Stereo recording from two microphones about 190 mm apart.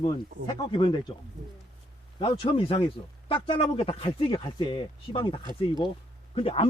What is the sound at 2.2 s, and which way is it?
Speech, 30° left (ahead or behind).